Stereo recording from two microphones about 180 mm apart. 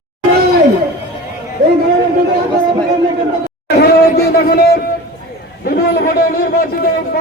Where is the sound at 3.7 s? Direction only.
60° left (ahead or behind).